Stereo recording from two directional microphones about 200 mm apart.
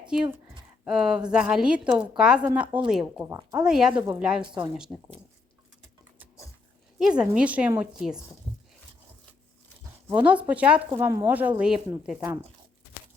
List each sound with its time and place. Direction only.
0.1 s a woman's voice: 10° right (ahead or behind)
3.9 s speech: 15° right (ahead or behind)
4.2 s a woman's voice: 5° right (ahead or behind)
7.0 s a woman's voice: 5° right (ahead or behind)
10.1 s speech: 5° right (ahead or behind)